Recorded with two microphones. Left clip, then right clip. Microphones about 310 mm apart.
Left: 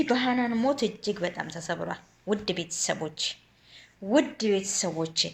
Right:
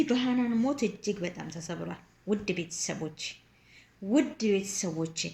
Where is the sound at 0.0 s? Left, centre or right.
Left.